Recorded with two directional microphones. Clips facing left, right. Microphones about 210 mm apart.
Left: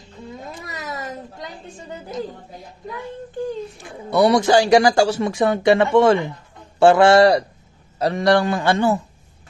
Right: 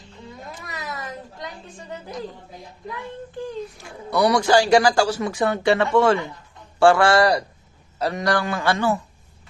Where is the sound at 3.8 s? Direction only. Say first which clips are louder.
Left 4 dB; 25° left (ahead or behind).